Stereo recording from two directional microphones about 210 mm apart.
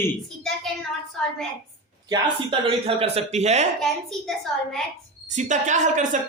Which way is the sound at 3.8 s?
Centre (ahead or behind).